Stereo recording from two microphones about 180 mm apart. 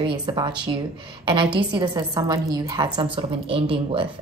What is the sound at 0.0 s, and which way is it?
A woman's voice, 25° right (ahead or behind).